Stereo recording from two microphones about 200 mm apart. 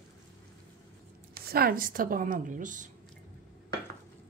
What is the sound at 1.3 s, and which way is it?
A woman's voice, 50° right (ahead or behind).